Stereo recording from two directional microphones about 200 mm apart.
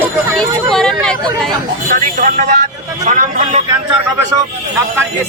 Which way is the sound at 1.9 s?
40° right (ahead or behind).